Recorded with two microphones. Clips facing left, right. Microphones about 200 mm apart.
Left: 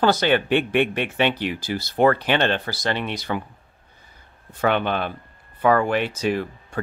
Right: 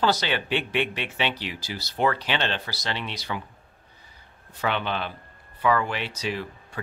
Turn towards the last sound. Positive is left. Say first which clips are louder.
# left 7 dB
turn(degrees=50)  # may be behind; listen again after turning